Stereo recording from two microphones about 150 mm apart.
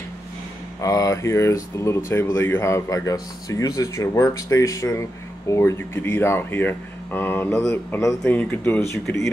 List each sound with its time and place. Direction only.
0.7 s speech: 20° left (ahead or behind)